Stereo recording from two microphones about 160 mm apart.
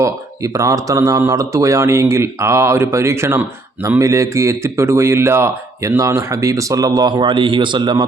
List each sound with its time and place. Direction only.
0.0 s a man's voice: 20° right (ahead or behind)